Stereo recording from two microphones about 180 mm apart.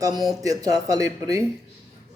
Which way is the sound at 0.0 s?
20° right (ahead or behind).